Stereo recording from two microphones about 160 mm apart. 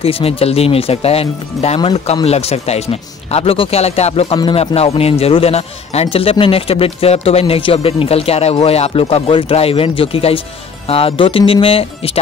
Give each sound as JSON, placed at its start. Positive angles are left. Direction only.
{"t": 0.0, "sound": "a man's voice", "side_deg": 35}